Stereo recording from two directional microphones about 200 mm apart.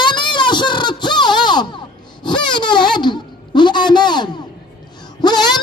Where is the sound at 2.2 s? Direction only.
25° left (ahead or behind).